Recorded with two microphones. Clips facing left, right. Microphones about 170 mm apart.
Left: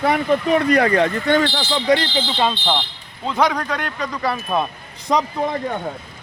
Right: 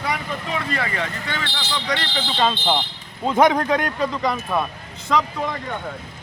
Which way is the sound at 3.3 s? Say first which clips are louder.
Right 3 dB; 25° right (ahead or behind).